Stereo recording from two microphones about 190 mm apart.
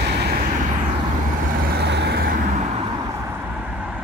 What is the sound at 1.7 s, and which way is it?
Vehicle, 60° right (ahead or behind).